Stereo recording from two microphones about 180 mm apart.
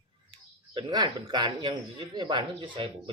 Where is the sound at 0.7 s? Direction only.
25° right (ahead or behind).